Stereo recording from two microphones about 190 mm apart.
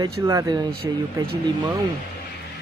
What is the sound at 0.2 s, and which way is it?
Speech, 15° right (ahead or behind).